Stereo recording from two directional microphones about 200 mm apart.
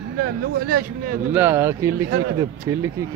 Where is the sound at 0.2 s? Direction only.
50° right (ahead or behind).